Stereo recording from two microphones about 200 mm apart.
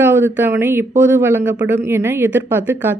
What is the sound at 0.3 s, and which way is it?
Speech, 10° right (ahead or behind).